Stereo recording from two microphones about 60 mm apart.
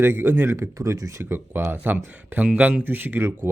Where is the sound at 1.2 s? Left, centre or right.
Right.